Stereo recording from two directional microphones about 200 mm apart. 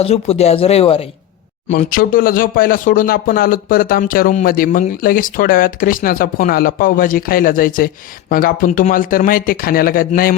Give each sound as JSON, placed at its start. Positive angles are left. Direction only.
{"t": 0.0, "sound": "speech", "side_deg": 30}
{"t": 1.7, "sound": "speech", "side_deg": 40}